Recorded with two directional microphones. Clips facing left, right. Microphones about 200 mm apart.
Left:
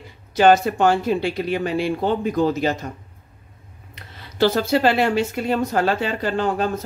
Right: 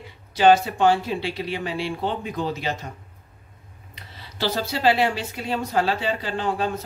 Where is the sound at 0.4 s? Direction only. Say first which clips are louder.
Left 2 dB; 50° left (ahead or behind).